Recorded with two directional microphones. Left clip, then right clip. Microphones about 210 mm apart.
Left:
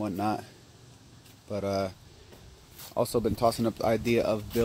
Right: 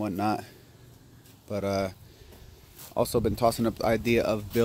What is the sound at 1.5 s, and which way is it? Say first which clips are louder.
Speech: right 1 dB; 15° right (ahead or behind).